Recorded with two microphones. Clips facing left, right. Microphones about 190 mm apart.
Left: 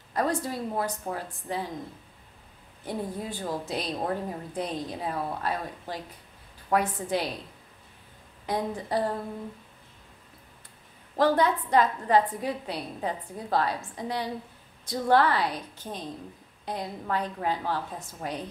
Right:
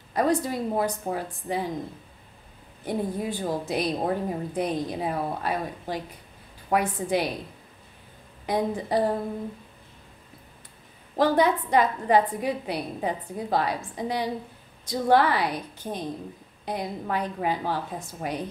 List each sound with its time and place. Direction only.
0.1 s a woman's voice: 15° right (ahead or behind)
2.8 s a woman's voice: 15° right (ahead or behind)
8.5 s a woman's voice: 15° right (ahead or behind)
11.1 s a woman's voice: 15° right (ahead or behind)